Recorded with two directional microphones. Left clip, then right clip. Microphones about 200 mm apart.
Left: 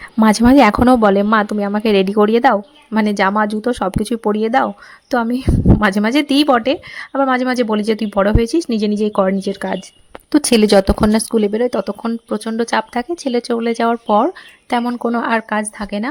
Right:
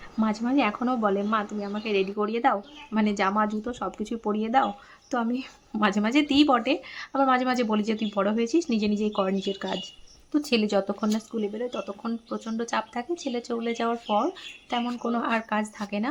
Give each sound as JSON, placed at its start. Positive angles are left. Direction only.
{"t": 0.2, "sound": "speech", "side_deg": 55}
{"t": 10.3, "sound": "speech", "side_deg": 55}